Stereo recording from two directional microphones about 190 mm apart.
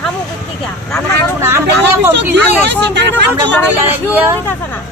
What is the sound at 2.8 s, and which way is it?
Speech, 65° right (ahead or behind).